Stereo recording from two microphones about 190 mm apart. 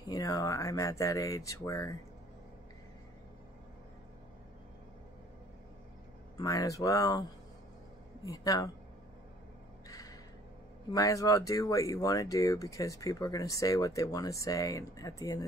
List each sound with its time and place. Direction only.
0.1 s speech: 20° left (ahead or behind)
6.3 s speech: 20° left (ahead or behind)
8.3 s speech: 15° left (ahead or behind)
9.8 s a sound: 20° left (ahead or behind)
10.9 s speech: 15° left (ahead or behind)